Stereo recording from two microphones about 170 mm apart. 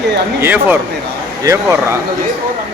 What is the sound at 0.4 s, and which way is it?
Speech, 10° right (ahead or behind).